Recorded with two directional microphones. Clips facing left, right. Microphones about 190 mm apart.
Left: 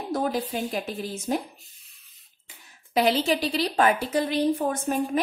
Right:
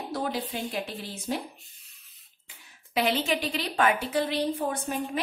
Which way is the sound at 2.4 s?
40° left (ahead or behind).